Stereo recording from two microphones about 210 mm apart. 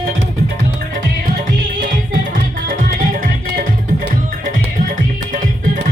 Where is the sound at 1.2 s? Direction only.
45° right (ahead or behind).